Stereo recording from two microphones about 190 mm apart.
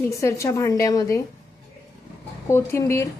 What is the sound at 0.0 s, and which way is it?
A woman's voice, 15° left (ahead or behind).